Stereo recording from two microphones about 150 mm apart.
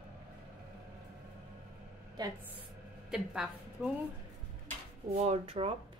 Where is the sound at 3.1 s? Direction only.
5° right (ahead or behind).